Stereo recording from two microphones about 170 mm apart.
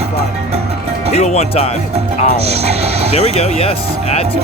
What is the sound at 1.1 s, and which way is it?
Speech, 40° left (ahead or behind).